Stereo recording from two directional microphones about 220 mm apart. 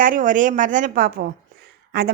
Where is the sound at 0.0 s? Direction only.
35° right (ahead or behind).